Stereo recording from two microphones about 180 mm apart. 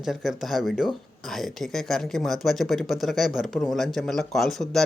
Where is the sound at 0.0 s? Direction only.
Centre (ahead or behind).